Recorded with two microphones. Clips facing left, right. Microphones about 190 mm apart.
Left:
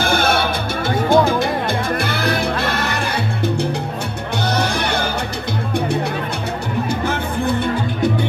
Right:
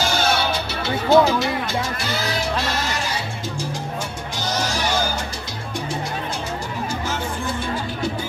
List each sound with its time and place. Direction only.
0.0 s music: 55° left (ahead or behind)
4.5 s music: 60° left (ahead or behind)
7.1 s music: 60° left (ahead or behind)